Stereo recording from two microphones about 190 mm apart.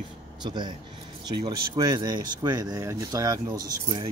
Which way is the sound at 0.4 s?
20° right (ahead or behind).